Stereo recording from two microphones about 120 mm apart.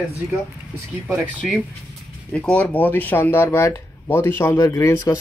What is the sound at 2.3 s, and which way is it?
Speech, 10° left (ahead or behind).